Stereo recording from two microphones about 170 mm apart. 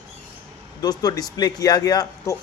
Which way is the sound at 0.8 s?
25° left (ahead or behind).